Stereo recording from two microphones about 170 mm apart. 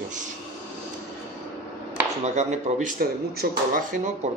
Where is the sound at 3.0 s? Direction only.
60° right (ahead or behind).